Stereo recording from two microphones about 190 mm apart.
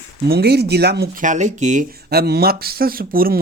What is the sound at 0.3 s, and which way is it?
Speech, 60° right (ahead or behind).